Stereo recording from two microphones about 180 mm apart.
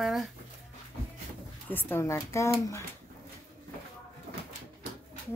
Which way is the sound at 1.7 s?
10° left (ahead or behind).